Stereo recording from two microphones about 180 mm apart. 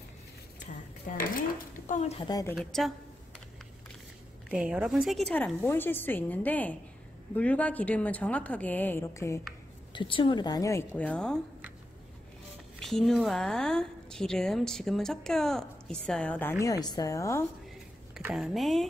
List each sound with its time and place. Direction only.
1.9 s speech: 40° left (ahead or behind)
2.1 s speech: 20° left (ahead or behind)
2.5 s a woman's voice: centre (ahead or behind)
4.5 s a woman's voice: 5° right (ahead or behind); by 9.4 s 15° left (ahead or behind)
9.9 s a woman's voice: 30° left (ahead or behind); by 11.3 s 5° left (ahead or behind)
12.7 s a woman's voice: centre (ahead or behind)
18.1 s speech: centre (ahead or behind)